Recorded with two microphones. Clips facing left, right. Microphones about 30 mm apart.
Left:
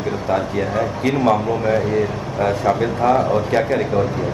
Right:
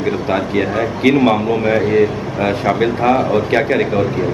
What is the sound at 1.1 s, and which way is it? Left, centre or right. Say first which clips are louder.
A man's voice: right 3 dB; right.